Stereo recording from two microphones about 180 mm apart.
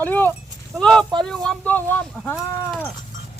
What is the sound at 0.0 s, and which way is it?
Speech, 10° left (ahead or behind).